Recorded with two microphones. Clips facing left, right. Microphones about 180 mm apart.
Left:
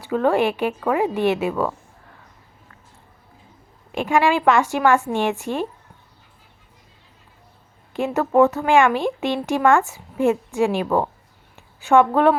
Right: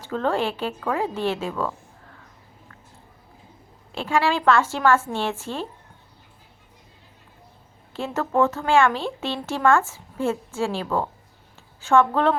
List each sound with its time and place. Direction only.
0.0 s speech: 10° left (ahead or behind)
3.9 s speech: 15° left (ahead or behind)
7.9 s a woman's voice: 15° left (ahead or behind)